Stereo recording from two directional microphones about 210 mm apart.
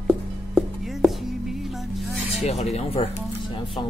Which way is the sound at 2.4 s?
30° left (ahead or behind).